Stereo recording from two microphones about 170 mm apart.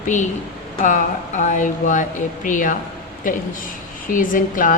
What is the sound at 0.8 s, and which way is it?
A woman's voice, 45° left (ahead or behind).